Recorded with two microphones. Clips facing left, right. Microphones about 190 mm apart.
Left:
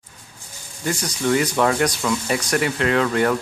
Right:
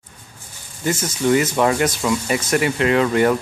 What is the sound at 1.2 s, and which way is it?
Speech, 5° right (ahead or behind).